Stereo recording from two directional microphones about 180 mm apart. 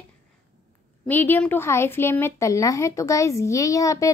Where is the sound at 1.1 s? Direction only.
10° left (ahead or behind).